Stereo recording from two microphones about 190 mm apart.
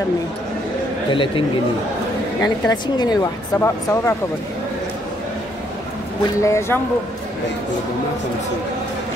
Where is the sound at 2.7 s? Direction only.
20° left (ahead or behind).